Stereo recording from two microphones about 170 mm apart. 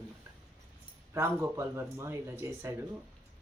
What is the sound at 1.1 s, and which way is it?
Speech, 15° right (ahead or behind).